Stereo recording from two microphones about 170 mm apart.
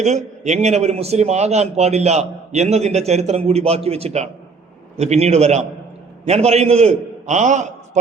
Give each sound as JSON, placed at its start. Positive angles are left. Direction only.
{"t": 0.0, "sound": "a man's voice", "side_deg": -40}